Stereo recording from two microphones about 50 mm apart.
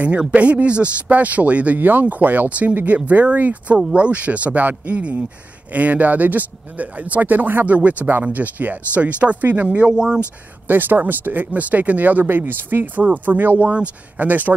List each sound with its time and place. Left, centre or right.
0.3 s speech: right
9.7 s speech: right
10.7 s speech: right